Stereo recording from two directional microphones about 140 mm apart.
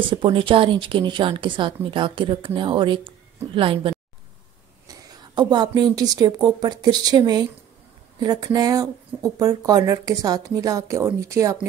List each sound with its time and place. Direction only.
0.0 s a woman's voice: 40° right (ahead or behind)